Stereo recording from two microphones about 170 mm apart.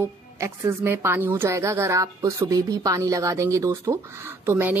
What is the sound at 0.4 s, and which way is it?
Speech, 15° right (ahead or behind).